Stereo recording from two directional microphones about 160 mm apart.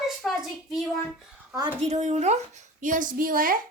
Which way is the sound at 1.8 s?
45° right (ahead or behind).